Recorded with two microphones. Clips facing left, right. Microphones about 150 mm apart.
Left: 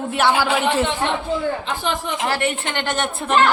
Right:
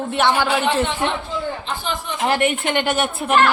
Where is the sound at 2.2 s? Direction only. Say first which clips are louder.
Right 5 dB; 20° right (ahead or behind).